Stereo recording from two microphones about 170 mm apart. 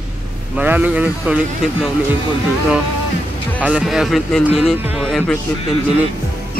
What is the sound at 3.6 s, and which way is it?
Speech, 5° right (ahead or behind).